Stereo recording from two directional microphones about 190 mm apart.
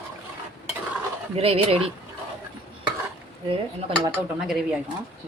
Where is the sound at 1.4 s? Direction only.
30° right (ahead or behind).